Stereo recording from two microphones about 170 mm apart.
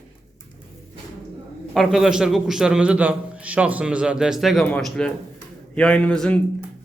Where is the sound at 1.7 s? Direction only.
Centre (ahead or behind).